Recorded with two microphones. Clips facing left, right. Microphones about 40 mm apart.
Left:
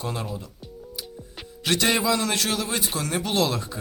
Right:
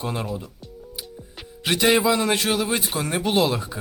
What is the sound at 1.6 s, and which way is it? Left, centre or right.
A man's voice, centre.